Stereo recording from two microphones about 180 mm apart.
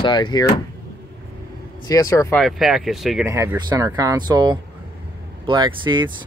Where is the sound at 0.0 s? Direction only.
25° left (ahead or behind).